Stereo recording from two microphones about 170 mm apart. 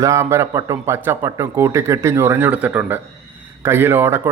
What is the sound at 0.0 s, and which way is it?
A man's voice, 15° right (ahead or behind).